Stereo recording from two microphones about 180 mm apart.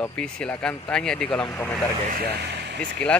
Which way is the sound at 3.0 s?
5° left (ahead or behind).